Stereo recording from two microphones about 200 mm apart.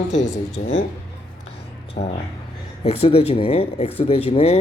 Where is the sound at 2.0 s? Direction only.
35° left (ahead or behind).